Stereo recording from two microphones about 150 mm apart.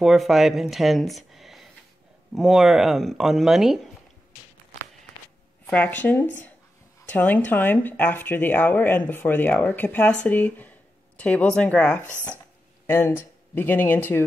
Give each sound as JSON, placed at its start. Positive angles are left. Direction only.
{"t": 0.0, "sound": "speech", "side_deg": 0}
{"t": 5.7, "sound": "speech", "side_deg": 10}